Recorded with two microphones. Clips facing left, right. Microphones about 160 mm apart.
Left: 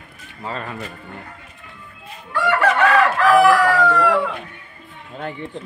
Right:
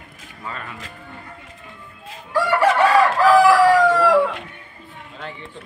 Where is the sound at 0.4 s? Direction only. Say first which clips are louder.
Left 4 dB; 30° left (ahead or behind).